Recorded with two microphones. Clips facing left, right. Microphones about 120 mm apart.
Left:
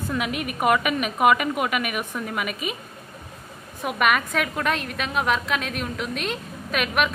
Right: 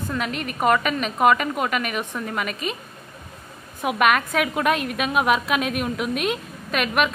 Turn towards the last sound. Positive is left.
turn(degrees=0)  # may be behind; listen again after turning